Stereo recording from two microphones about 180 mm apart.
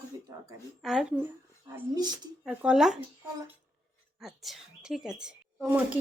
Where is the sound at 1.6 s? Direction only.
20° right (ahead or behind).